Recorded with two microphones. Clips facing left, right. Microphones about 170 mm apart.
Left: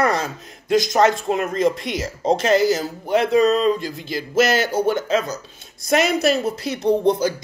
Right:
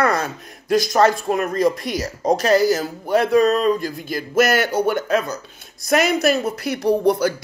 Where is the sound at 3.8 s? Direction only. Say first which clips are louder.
Right 1 dB; 50° right (ahead or behind).